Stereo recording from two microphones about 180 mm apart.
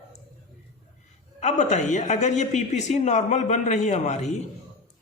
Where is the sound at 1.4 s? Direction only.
40° left (ahead or behind).